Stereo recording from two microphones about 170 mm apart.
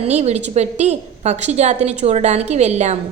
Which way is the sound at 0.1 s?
40° right (ahead or behind).